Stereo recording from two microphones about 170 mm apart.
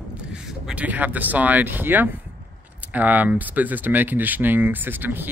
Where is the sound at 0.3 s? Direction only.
5° right (ahead or behind).